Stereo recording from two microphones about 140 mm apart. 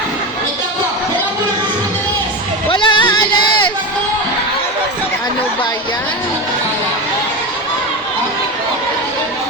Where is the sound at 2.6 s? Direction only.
35° left (ahead or behind).